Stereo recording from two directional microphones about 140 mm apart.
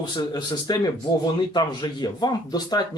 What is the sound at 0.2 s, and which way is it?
A man's voice, 30° left (ahead or behind).